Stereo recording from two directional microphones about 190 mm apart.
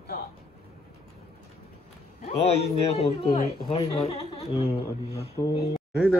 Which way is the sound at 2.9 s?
30° left (ahead or behind).